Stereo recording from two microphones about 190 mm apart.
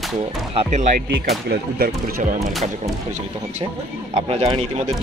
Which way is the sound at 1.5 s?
55° right (ahead or behind).